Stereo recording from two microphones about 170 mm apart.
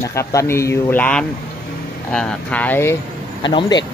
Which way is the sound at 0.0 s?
15° left (ahead or behind).